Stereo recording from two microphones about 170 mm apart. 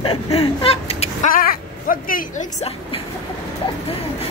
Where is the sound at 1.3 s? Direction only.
55° left (ahead or behind).